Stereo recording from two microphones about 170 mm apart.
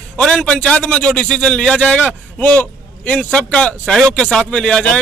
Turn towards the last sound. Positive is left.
turn(degrees=5)  # may be behind; listen again after turning